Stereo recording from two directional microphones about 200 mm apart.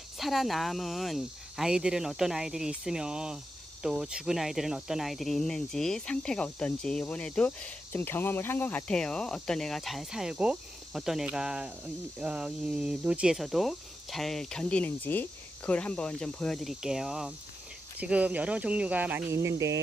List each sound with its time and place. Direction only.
0.2 s speech: centre (ahead or behind)